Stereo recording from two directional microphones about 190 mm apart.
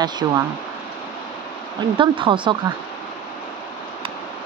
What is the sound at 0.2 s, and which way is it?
Speech, 20° right (ahead or behind).